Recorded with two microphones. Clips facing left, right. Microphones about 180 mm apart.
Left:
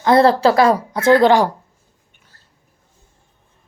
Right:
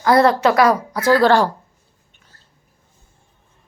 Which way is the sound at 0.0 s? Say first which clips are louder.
Left 2 dB; 25° left (ahead or behind).